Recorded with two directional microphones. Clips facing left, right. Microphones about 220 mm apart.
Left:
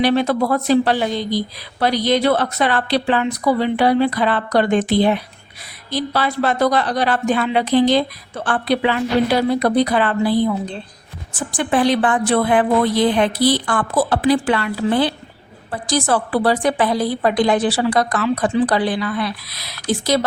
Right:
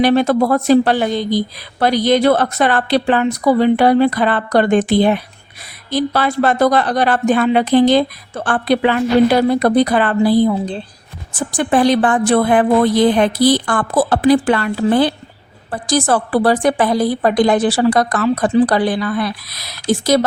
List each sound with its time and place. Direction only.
0.0 s speech: 50° right (ahead or behind)